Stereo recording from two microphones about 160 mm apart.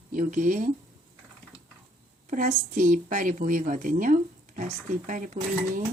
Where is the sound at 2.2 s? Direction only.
55° right (ahead or behind).